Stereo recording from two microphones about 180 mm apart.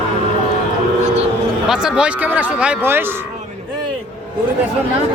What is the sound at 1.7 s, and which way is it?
Speech, 5° right (ahead or behind).